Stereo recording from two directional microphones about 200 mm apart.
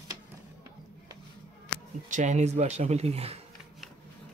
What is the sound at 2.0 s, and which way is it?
Speech, 35° right (ahead or behind).